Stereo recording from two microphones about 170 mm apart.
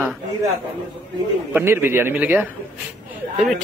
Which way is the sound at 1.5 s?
15° right (ahead or behind).